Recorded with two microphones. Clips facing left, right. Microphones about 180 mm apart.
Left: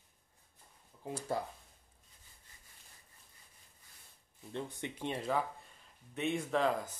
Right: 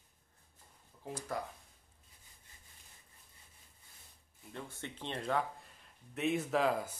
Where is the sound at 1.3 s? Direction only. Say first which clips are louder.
Left 2 dB; 30° left (ahead or behind).